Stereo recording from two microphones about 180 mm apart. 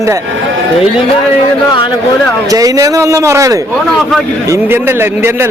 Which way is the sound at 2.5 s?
20° right (ahead or behind).